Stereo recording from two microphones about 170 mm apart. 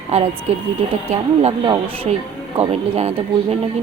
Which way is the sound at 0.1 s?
40° right (ahead or behind).